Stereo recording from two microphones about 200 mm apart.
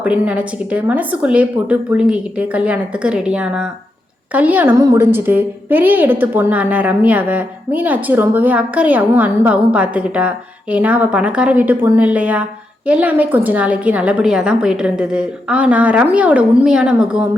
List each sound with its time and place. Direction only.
0.0 s a woman's voice: 5° right (ahead or behind)